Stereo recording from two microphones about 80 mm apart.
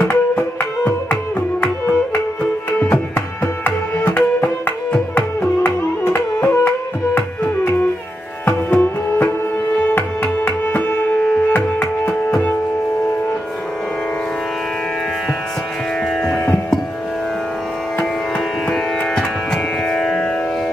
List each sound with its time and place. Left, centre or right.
0.1 s music: left
2.8 s music: left
16.2 s music: centre
19.1 s music: centre